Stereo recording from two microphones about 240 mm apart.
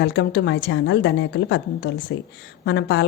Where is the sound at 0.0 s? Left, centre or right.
Left.